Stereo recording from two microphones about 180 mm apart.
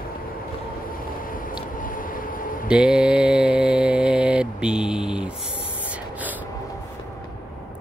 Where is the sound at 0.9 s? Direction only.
50° left (ahead or behind).